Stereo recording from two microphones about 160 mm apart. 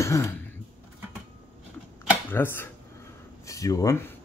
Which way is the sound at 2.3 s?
15° left (ahead or behind).